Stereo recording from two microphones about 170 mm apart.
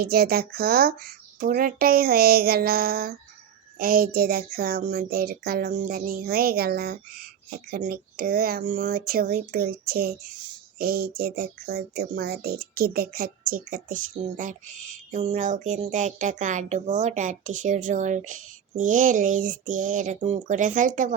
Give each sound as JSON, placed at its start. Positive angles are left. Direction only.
{"t": 0.0, "sound": "speech", "side_deg": -65}